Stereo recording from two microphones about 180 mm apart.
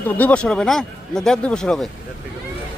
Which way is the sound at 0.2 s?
5° left (ahead or behind).